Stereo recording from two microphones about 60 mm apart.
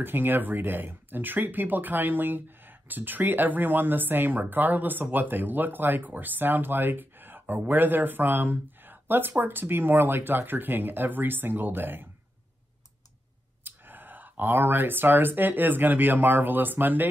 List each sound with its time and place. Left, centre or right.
0.0 s speech: right
13.7 s speech: right